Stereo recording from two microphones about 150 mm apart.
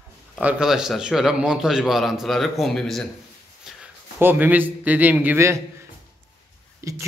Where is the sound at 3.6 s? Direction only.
10° right (ahead or behind).